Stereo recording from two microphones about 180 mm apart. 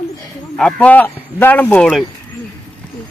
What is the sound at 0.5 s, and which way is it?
Speech, 5° left (ahead or behind).